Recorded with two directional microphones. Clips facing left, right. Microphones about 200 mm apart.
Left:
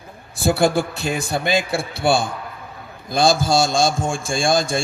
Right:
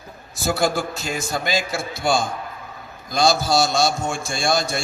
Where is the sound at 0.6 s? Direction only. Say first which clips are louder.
Left 3 dB; 55° left (ahead or behind).